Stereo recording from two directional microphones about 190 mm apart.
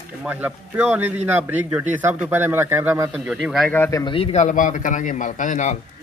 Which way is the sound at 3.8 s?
20° left (ahead or behind).